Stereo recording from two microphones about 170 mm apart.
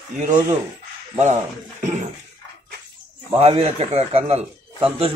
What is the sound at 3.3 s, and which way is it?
A man's voice, 35° right (ahead or behind).